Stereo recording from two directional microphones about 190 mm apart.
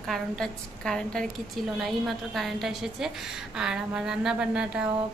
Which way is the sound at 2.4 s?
Centre (ahead or behind).